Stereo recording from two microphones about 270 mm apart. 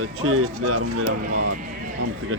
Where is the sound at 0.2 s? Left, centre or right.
Right.